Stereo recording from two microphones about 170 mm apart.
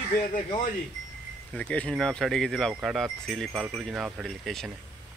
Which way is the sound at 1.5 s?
5° left (ahead or behind).